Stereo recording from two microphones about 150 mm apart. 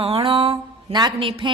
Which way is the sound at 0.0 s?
40° right (ahead or behind).